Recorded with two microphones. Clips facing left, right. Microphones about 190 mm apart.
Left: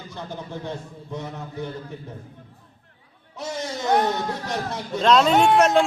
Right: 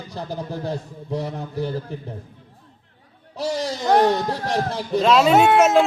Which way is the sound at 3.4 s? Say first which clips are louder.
Right 5 dB; 35° right (ahead or behind).